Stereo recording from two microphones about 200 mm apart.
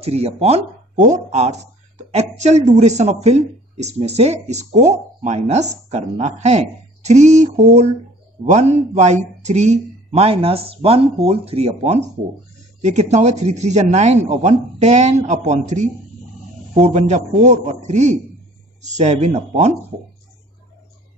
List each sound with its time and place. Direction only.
0.0 s speech: 30° right (ahead or behind)